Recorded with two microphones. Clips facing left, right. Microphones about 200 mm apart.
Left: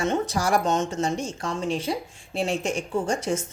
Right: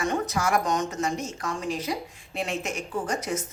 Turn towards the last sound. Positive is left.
turn(degrees=25)  # may be behind; listen again after turning